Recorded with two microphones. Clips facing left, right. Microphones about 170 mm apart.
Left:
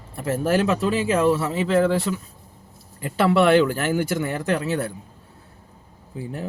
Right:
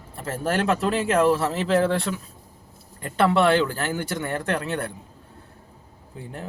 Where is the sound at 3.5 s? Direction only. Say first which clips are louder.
Left 5 dB; 35° right (ahead or behind).